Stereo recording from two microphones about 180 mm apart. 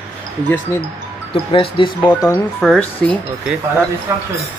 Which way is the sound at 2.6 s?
5° left (ahead or behind).